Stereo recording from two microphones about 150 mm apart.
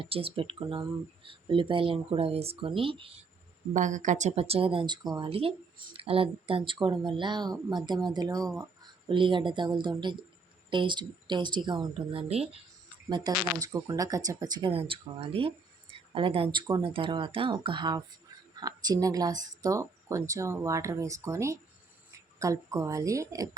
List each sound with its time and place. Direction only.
0.0 s speech: 40° right (ahead or behind)
3.8 s speech: 55° right (ahead or behind); by 12.5 s 40° right (ahead or behind)
13.1 s speech: 30° right (ahead or behind)
14.7 s a woman's voice: 40° right (ahead or behind); by 23.5 s 20° right (ahead or behind)